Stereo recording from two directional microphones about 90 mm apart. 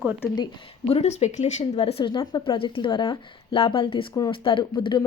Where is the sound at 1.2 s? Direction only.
90° left.